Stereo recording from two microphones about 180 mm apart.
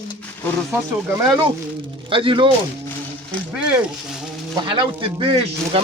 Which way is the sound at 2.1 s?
30° right (ahead or behind).